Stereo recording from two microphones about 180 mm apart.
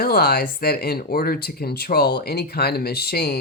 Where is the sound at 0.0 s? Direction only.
60° left (ahead or behind).